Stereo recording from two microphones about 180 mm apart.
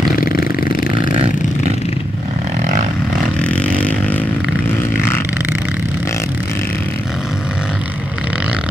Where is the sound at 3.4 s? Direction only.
5° left (ahead or behind).